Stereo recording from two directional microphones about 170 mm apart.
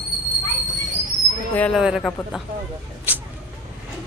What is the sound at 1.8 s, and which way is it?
Speech, centre (ahead or behind).